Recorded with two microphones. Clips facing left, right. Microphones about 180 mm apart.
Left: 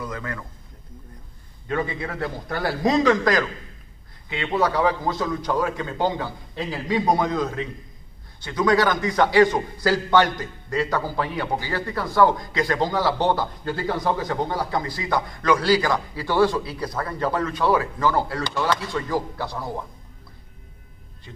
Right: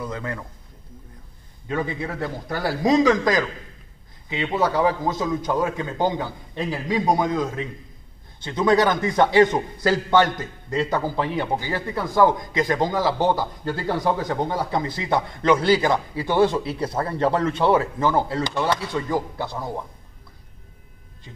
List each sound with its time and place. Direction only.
0.0 s speech: 30° right (ahead or behind)
1.7 s a man's voice: 10° right (ahead or behind)
6.6 s a man's voice: centre (ahead or behind)
7.1 s a man's voice: 10° right (ahead or behind)
8.5 s a man's voice: 25° right (ahead or behind)
14.5 s a man's voice: 20° right (ahead or behind)